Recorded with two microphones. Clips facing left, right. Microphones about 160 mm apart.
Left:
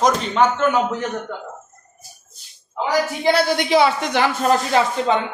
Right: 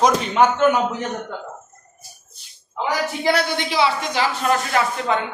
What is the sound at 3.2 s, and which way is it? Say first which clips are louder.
Speech: left 2 dB; 30° left (ahead or behind).